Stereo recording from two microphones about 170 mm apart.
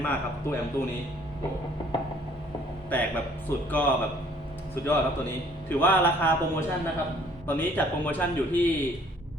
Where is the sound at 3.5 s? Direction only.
15° left (ahead or behind).